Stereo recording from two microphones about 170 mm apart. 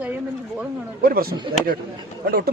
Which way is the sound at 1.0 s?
60° right (ahead or behind).